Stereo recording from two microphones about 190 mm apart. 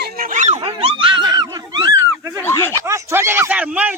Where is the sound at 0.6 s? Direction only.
30° right (ahead or behind).